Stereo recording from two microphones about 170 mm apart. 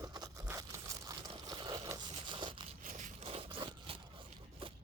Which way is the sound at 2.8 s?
50° right (ahead or behind).